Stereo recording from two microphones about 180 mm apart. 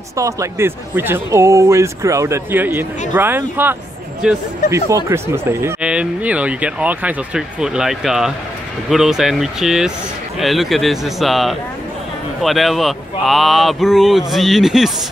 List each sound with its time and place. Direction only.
0.1 s speech: 15° right (ahead or behind)